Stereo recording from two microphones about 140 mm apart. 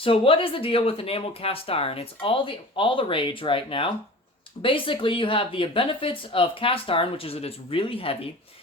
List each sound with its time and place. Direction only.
0.0 s speech: 40° left (ahead or behind)